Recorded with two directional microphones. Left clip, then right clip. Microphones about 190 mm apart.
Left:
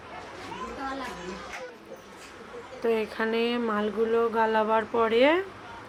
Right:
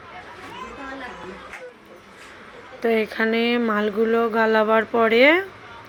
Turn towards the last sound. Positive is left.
turn(degrees=-20)  # may be behind; listen again after turning